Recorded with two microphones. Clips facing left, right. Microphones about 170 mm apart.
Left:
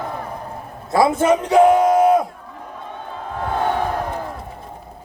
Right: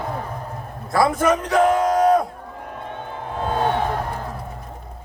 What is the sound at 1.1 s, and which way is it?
Speech, 25° left (ahead or behind).